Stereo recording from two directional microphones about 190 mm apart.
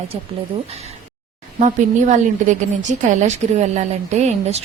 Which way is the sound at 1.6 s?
40° right (ahead or behind).